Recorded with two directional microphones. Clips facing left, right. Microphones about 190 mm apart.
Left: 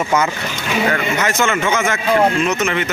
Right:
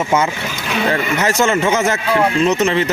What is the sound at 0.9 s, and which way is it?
Speech, 35° right (ahead or behind).